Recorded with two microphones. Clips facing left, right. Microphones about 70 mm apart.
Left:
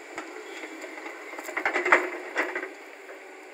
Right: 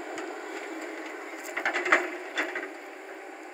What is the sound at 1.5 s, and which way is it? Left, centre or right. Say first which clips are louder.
Printer: left 3 dB; left.